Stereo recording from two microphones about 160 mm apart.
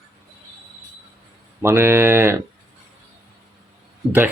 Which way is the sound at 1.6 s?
15° right (ahead or behind).